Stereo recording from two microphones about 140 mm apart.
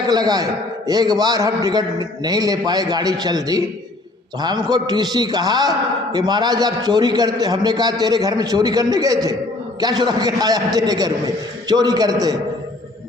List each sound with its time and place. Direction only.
0.1 s a man's voice: 30° right (ahead or behind)